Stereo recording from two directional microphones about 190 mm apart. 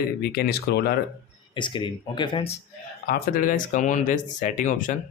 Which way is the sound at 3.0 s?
45° left (ahead or behind).